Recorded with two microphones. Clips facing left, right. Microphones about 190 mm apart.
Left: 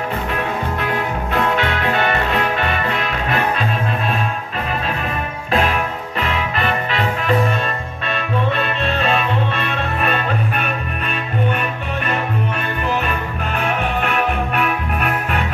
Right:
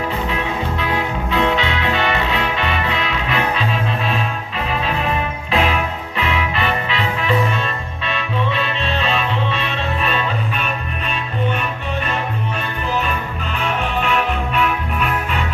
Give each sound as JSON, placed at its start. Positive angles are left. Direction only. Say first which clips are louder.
{"t": 0.3, "sound": "music", "louder": "even", "side_deg": 55}
{"t": 5.5, "sound": "music", "louder": "left 1 dB", "side_deg": 45}
{"t": 12.8, "sound": "music", "louder": "even", "side_deg": 55}